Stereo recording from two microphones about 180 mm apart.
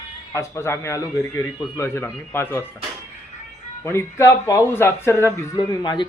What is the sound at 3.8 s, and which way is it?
Speech, 15° left (ahead or behind).